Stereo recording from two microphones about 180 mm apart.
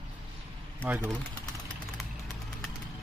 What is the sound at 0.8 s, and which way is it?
Speech, 10° right (ahead or behind).